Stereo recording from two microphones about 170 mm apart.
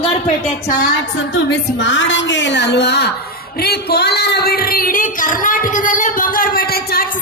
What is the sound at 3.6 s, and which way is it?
Speech, 70° left (ahead or behind).